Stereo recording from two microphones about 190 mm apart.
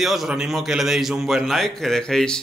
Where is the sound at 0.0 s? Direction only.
Centre (ahead or behind).